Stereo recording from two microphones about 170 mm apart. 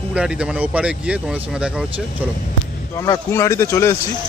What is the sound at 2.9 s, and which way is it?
Speech, 20° left (ahead or behind).